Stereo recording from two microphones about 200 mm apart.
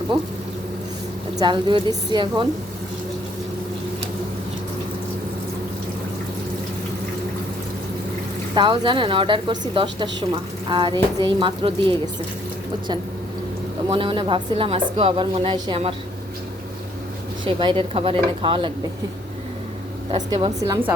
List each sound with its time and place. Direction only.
1.4 s a woman's voice: 25° right (ahead or behind)
8.5 s a woman's voice: 25° right (ahead or behind)
13.9 s a woman's voice: 25° right (ahead or behind)
17.4 s a woman's voice: 25° right (ahead or behind)
20.3 s a woman's voice: 20° right (ahead or behind)